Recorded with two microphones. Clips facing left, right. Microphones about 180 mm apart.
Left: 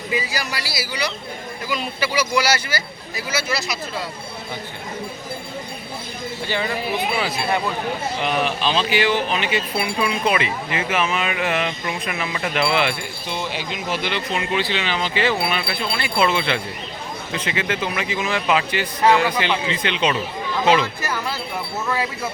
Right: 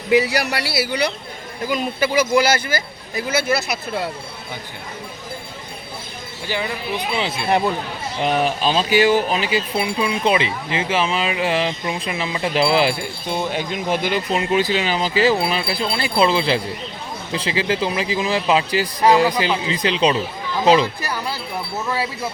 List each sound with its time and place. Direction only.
0.1 s speech: 70° right (ahead or behind)
1.6 s speech: 45° right (ahead or behind)
8.2 s speech: 35° right (ahead or behind)
13.5 s speech: 50° right (ahead or behind)
20.8 s speech: 15° right (ahead or behind)